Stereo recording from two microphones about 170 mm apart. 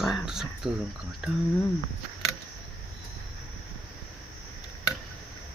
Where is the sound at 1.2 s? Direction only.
5° right (ahead or behind).